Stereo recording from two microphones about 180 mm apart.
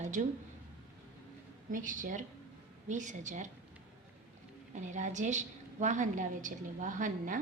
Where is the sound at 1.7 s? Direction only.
45° right (ahead or behind).